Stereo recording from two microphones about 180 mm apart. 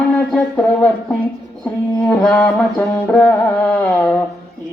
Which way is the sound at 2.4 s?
10° left (ahead or behind).